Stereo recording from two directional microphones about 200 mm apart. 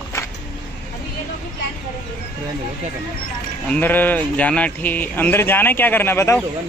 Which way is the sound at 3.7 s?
10° left (ahead or behind).